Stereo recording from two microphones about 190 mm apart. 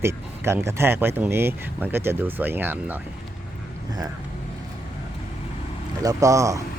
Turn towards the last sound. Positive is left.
turn(degrees=-15)  # may be behind; listen again after turning